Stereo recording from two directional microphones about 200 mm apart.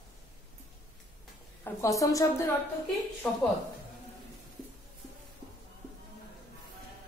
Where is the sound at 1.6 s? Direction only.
15° left (ahead or behind).